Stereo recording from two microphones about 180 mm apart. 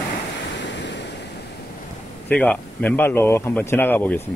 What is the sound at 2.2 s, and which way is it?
Speech, 5° left (ahead or behind).